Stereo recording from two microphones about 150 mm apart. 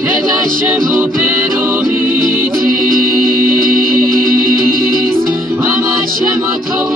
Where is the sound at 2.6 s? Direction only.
70° right (ahead or behind).